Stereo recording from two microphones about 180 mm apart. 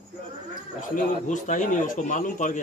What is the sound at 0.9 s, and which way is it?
A man's voice, 45° left (ahead or behind).